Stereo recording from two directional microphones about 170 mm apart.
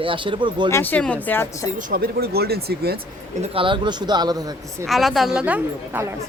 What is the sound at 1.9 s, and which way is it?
Speech, 65° right (ahead or behind).